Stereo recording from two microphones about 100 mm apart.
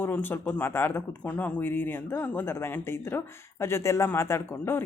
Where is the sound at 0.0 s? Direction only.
20° left (ahead or behind).